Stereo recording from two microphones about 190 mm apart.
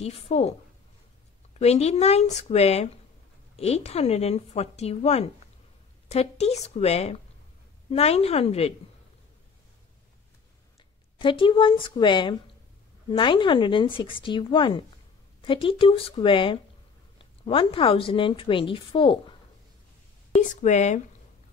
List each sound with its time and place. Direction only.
0.0 s speech: 35° left (ahead or behind)
1.6 s speech: 35° left (ahead or behind)
11.1 s a woman's voice: 25° left (ahead or behind)
20.6 s speech: 40° left (ahead or behind)